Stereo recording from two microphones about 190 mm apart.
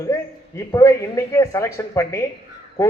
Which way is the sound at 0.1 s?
15° left (ahead or behind).